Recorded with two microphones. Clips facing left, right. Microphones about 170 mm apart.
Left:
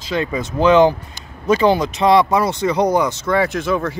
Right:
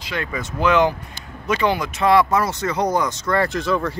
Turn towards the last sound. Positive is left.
turn(degrees=5)  # may be behind; listen again after turning